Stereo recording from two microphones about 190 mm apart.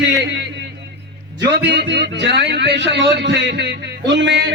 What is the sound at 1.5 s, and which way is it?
A man's voice, 60° right (ahead or behind).